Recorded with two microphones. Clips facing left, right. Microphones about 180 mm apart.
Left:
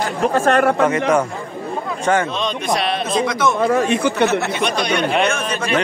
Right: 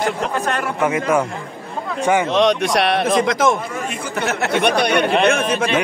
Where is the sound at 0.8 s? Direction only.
5° right (ahead or behind).